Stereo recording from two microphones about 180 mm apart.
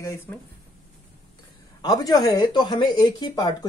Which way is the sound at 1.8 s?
20° left (ahead or behind).